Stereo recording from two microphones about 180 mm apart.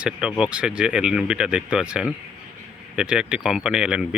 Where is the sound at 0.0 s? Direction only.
5° right (ahead or behind).